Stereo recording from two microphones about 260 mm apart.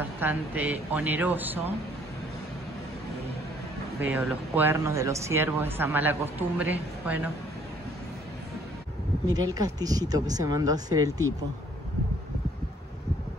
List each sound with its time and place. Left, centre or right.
0.2 s speech: centre
4.0 s speech: centre
9.5 s speech: centre